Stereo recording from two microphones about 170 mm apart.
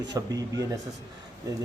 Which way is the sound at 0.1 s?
20° right (ahead or behind).